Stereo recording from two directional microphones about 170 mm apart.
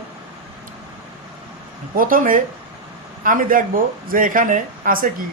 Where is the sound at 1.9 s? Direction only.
55° right (ahead or behind).